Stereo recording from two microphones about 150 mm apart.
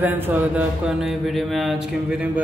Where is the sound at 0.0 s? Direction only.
10° right (ahead or behind).